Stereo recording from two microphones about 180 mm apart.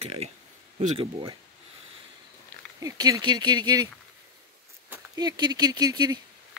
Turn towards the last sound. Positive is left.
turn(degrees=-20)  # may be behind; listen again after turning